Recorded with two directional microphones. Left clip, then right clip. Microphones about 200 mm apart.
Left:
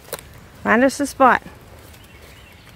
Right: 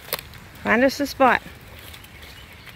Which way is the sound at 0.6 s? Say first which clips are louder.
Left 3 dB; 15° left (ahead or behind).